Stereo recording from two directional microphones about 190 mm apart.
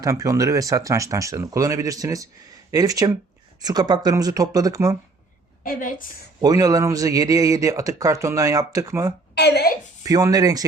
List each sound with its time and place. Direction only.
0.0 s a man's voice: 15° right (ahead or behind)
5.6 s a woman's voice: 45° left (ahead or behind)
6.4 s a man's voice: 20° right (ahead or behind)
9.3 s a woman's voice: 60° left (ahead or behind)
10.0 s speech: 20° right (ahead or behind)